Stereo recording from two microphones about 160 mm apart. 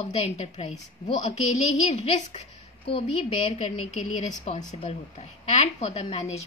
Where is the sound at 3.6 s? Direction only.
40° left (ahead or behind).